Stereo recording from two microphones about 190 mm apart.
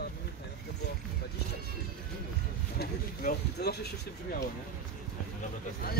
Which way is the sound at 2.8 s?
55° left (ahead or behind).